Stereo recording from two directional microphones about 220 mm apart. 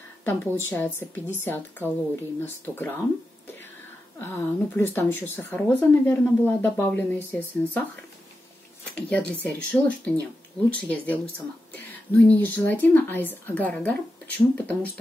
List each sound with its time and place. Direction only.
0.2 s a woman's voice: 10° left (ahead or behind)
4.2 s speech: 10° left (ahead or behind)